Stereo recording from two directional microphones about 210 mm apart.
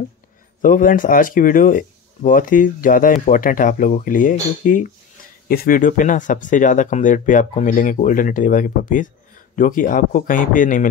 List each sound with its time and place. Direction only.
0.6 s speech: 40° left (ahead or behind)